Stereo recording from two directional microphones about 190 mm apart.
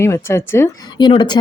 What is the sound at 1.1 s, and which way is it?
Speech, 25° left (ahead or behind).